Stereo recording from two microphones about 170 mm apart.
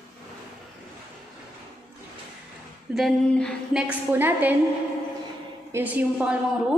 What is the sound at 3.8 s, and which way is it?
Speech, 10° right (ahead or behind).